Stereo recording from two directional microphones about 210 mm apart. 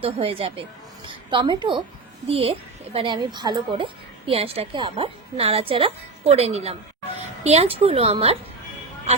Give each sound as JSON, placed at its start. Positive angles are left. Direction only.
{"t": 0.0, "sound": "a woman's voice", "side_deg": -25}